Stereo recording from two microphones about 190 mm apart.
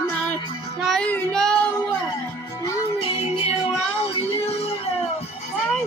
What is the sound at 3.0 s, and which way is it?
Music, 30° left (ahead or behind).